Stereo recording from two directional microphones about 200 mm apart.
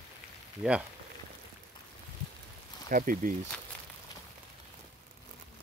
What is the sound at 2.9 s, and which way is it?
Speech, 45° right (ahead or behind).